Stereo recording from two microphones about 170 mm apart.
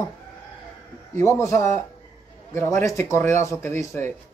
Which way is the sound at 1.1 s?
15° left (ahead or behind).